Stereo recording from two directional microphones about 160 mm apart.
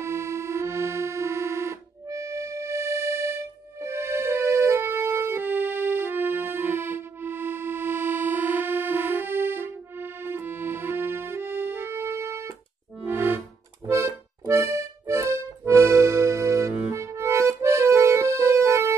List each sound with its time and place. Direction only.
0.0 s music: 15° right (ahead or behind)
13.0 s accordion: 15° right (ahead or behind)